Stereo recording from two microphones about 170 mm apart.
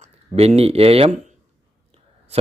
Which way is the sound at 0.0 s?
35° right (ahead or behind).